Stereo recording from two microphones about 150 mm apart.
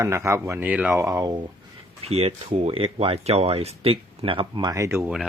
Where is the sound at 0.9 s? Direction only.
20° right (ahead or behind).